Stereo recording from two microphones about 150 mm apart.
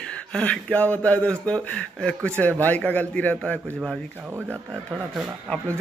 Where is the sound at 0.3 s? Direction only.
10° left (ahead or behind).